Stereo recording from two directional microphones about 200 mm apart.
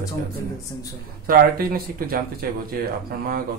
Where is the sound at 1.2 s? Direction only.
45° right (ahead or behind).